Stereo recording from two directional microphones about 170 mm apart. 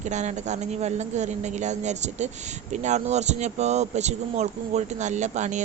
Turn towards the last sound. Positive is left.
turn(degrees=-45)  # may be behind; listen again after turning